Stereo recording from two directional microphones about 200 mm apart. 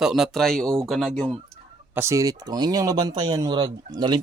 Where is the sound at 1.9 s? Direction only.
15° right (ahead or behind).